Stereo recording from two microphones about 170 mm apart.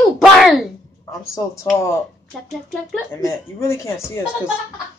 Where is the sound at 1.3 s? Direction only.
20° left (ahead or behind).